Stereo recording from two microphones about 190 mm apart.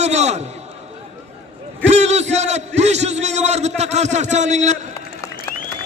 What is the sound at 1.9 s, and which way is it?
A man's voice, 35° right (ahead or behind).